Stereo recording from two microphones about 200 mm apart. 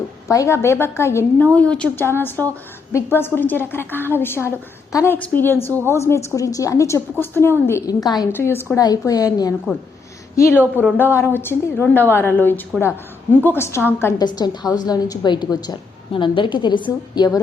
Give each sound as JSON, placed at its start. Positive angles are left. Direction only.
{"t": 0.3, "sound": "a woman's voice", "side_deg": 15}
{"t": 10.6, "sound": "speech", "side_deg": -10}
{"t": 10.9, "sound": "a woman's voice", "side_deg": 10}